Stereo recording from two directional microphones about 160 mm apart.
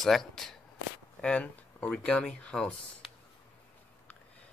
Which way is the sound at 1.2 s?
5° left (ahead or behind).